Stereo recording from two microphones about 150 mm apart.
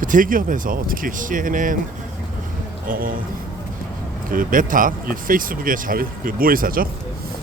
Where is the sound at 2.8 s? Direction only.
70° right (ahead or behind).